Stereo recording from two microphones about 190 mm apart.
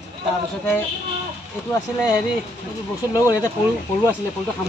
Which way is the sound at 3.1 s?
20° left (ahead or behind).